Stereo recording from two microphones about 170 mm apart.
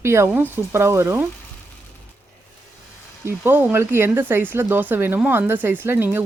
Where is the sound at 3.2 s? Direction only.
15° right (ahead or behind).